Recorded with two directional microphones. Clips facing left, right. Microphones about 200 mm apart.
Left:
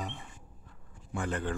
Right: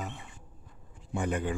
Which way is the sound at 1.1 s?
15° right (ahead or behind).